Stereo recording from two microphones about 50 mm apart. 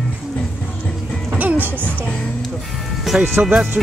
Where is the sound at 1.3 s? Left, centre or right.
Right.